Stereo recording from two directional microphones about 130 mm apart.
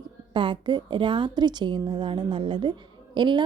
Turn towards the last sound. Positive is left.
turn(degrees=-35)  # may be behind; listen again after turning